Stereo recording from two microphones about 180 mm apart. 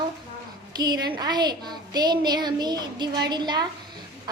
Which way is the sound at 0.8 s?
25° right (ahead or behind).